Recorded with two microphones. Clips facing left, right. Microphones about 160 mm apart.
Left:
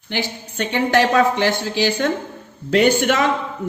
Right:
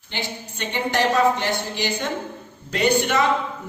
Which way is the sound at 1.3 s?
90° left.